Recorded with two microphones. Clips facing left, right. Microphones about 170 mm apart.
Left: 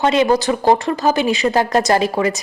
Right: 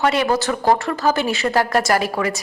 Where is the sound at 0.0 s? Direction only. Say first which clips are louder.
Left 4 dB; 20° left (ahead or behind).